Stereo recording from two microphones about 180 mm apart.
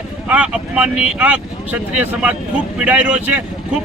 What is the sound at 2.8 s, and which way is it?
Speech, 5° right (ahead or behind).